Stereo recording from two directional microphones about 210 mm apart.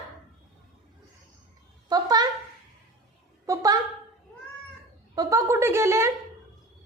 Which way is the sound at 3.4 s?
15° right (ahead or behind).